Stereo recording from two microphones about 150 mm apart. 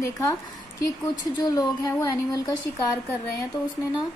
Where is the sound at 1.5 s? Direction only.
25° left (ahead or behind).